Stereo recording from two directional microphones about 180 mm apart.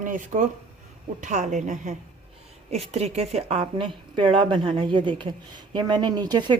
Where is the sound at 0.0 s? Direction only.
45° right (ahead or behind).